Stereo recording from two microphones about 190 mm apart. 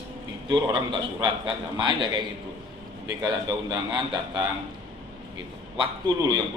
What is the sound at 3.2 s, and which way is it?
A man's voice, 20° right (ahead or behind).